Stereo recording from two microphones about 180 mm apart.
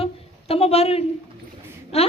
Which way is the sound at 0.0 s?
35° left (ahead or behind).